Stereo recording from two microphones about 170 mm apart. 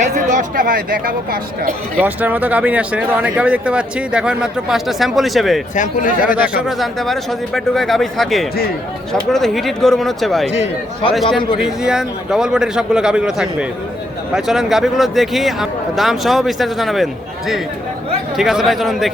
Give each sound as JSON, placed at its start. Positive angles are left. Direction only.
{"t": 0.1, "sound": "speech", "side_deg": -50}
{"t": 2.0, "sound": "speech", "side_deg": -10}
{"t": 5.7, "sound": "speech", "side_deg": 50}
{"t": 6.7, "sound": "speech", "side_deg": 0}
{"t": 10.5, "sound": "a man's voice", "side_deg": 40}
{"t": 11.1, "sound": "speech", "side_deg": 0}
{"t": 18.3, "sound": "speech", "side_deg": 0}